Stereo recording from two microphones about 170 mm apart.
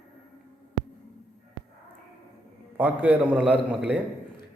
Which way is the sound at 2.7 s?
10° right (ahead or behind).